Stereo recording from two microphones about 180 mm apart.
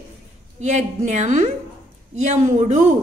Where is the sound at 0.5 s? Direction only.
40° right (ahead or behind).